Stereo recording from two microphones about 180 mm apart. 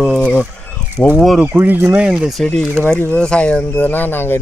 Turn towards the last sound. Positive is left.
turn(degrees=10)  # may be behind; listen again after turning